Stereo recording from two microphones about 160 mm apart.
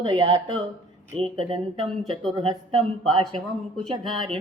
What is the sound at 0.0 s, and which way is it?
A man's voice, 30° right (ahead or behind).